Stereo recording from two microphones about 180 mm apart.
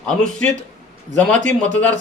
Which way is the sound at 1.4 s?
45° right (ahead or behind).